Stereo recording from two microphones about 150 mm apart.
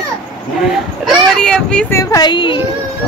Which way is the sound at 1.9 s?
25° left (ahead or behind).